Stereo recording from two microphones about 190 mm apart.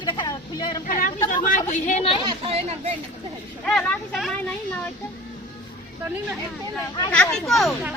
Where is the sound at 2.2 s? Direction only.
25° right (ahead or behind).